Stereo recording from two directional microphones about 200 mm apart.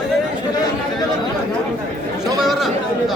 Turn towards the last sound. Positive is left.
turn(degrees=0)  # may be behind; listen again after turning